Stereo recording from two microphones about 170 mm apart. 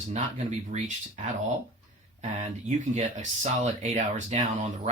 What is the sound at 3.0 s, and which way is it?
Speech, 45° right (ahead or behind).